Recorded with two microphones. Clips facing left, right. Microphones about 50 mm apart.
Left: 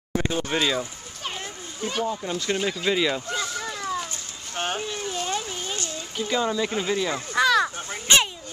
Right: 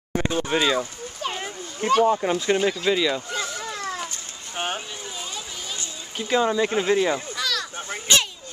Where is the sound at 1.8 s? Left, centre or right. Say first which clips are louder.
Right 9 dB; right.